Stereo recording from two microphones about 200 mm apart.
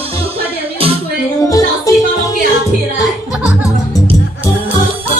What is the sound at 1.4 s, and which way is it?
Music, 15° left (ahead or behind).